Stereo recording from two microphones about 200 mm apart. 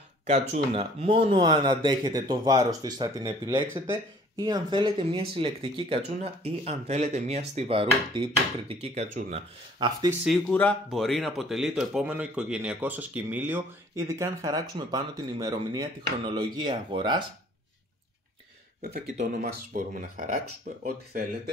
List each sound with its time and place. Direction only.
0.3 s speech: 30° right (ahead or behind)
10.2 s speech: 5° left (ahead or behind); by 17.2 s 20° right (ahead or behind)
18.8 s speech: 45° right (ahead or behind)